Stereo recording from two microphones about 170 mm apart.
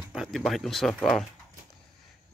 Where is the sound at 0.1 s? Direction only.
Centre (ahead or behind).